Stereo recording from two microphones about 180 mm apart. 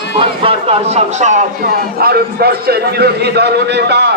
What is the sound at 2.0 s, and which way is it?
A man's voice, 60° right (ahead or behind).